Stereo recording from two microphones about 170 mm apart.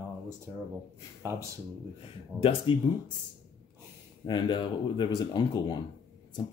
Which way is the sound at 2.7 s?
30° left (ahead or behind).